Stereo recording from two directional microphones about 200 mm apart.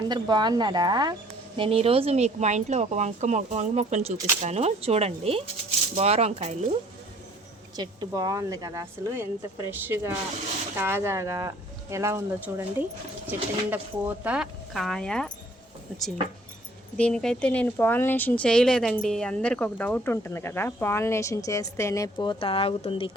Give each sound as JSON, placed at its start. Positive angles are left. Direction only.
{"t": 0.1, "sound": "speech", "side_deg": -20}
{"t": 7.8, "sound": "speech", "side_deg": -20}
{"t": 17.0, "sound": "speech", "side_deg": 5}